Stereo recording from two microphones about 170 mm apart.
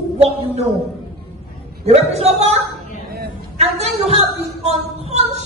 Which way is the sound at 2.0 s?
40° right (ahead or behind).